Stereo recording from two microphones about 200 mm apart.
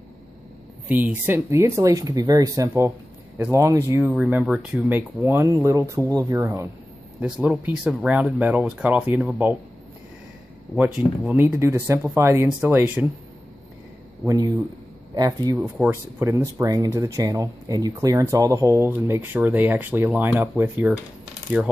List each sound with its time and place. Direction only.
0.8 s speech: 10° right (ahead or behind)
10.7 s speech: 5° right (ahead or behind)
14.2 s speech: 15° right (ahead or behind)
15.6 s speech: 10° right (ahead or behind)